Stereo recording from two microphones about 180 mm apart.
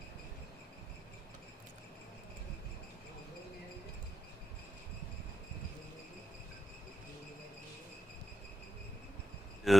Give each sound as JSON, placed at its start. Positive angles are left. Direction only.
{"t": 9.7, "sound": "a man's voice", "side_deg": 0}